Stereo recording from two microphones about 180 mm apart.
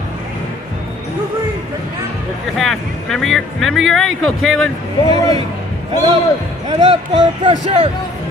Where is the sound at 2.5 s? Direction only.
Centre (ahead or behind).